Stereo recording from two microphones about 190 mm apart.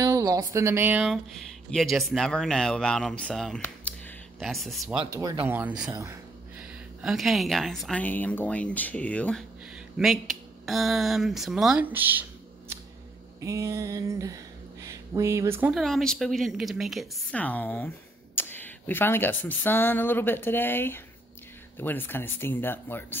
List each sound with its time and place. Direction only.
0.0 s a woman's voice: 15° right (ahead or behind); by 4.9 s centre (ahead or behind)
5.1 s speech: 20° right (ahead or behind)
5.5 s speech: 5° right (ahead or behind)
13.4 s a sound: 15° right (ahead or behind)
15.7 s speech: centre (ahead or behind)